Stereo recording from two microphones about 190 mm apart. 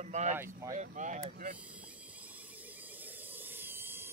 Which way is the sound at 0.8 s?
40° right (ahead or behind).